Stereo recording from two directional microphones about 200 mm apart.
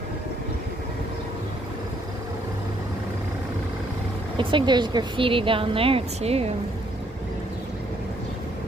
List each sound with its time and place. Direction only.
4.4 s a woman's voice: 25° right (ahead or behind)